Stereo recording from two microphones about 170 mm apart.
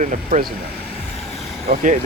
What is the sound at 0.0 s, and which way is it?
Speech, 50° right (ahead or behind).